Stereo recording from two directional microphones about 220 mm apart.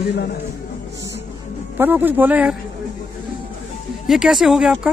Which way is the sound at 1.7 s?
10° right (ahead or behind).